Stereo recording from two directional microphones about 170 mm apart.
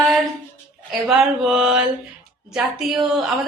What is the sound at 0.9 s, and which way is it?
Speech, centre (ahead or behind).